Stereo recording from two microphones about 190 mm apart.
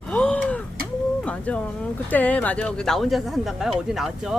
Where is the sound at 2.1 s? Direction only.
10° left (ahead or behind).